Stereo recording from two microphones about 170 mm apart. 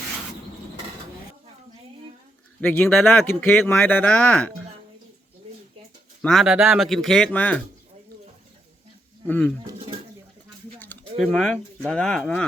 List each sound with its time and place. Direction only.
2.6 s speech: 10° left (ahead or behind)
6.2 s speech: centre (ahead or behind)
9.2 s speech: 10° left (ahead or behind)
11.2 s speech: 5° left (ahead or behind)